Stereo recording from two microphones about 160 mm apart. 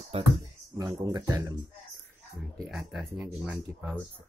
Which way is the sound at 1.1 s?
25° right (ahead or behind).